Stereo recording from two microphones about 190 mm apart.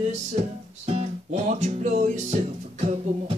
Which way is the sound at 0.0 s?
35° right (ahead or behind).